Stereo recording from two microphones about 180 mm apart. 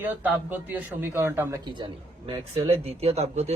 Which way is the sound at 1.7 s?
25° right (ahead or behind).